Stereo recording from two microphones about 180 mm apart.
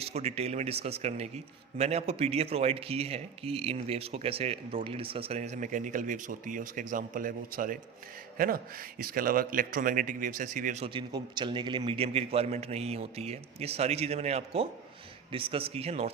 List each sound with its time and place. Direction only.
0.0 s a man's voice: 35° right (ahead or behind)
10.8 s a man's voice: 25° right (ahead or behind)